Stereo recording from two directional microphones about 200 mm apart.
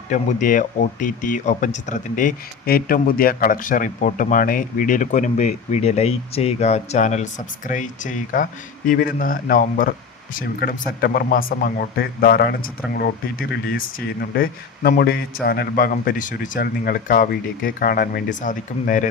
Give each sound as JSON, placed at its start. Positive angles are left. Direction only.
{"t": 0.1, "sound": "speech", "side_deg": 40}